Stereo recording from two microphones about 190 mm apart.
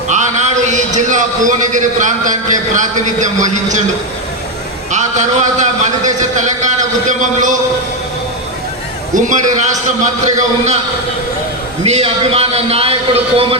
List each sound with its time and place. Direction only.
0.1 s a man's voice: 40° right (ahead or behind)
4.9 s a man's voice: 40° right (ahead or behind)
9.1 s a man's voice: 40° right (ahead or behind)
11.8 s a man's voice: 30° right (ahead or behind)